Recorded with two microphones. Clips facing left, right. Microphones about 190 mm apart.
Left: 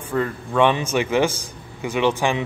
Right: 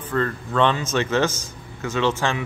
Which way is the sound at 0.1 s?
10° left (ahead or behind).